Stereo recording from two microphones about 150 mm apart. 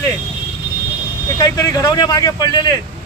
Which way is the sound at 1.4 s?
25° left (ahead or behind).